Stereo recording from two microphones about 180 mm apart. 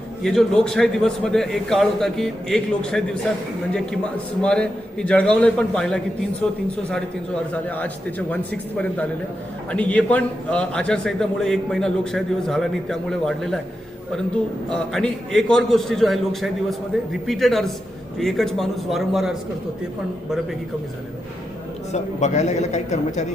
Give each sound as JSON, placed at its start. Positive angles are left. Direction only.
{"t": 0.2, "sound": "a man's voice", "side_deg": 0}
{"t": 7.5, "sound": "a man's voice", "side_deg": 10}
{"t": 9.7, "sound": "a man's voice", "side_deg": 5}
{"t": 14.7, "sound": "a man's voice", "side_deg": 5}
{"t": 21.9, "sound": "speech", "side_deg": 40}